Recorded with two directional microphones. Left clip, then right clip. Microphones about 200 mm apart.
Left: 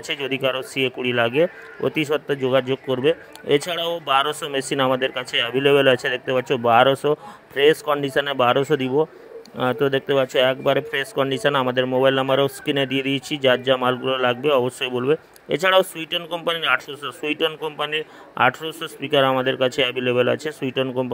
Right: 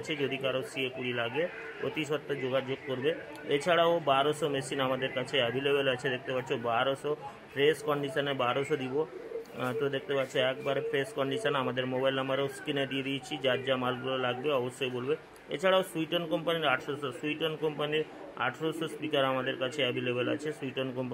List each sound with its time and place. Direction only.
0.1 s a man's voice: 45° left (ahead or behind)